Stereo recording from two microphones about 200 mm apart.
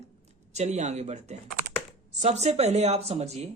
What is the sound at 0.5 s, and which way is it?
Speech, 35° right (ahead or behind).